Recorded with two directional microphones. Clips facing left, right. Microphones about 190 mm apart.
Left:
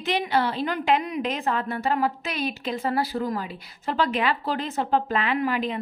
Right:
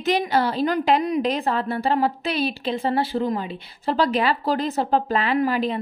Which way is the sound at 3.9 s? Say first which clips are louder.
Right 3 dB; 35° right (ahead or behind).